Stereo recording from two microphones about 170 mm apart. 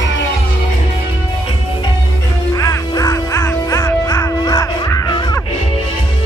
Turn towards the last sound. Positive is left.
turn(degrees=20)  # may be behind; listen again after turning